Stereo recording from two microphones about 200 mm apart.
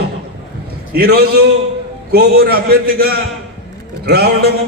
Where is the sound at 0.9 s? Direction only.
50° right (ahead or behind).